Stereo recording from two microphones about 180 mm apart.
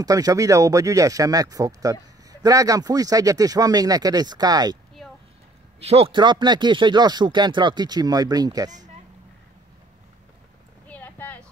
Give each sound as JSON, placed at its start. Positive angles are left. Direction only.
{"t": 0.0, "sound": "speech", "side_deg": -20}
{"t": 5.8, "sound": "speech", "side_deg": -35}
{"t": 10.9, "sound": "a sound", "side_deg": 10}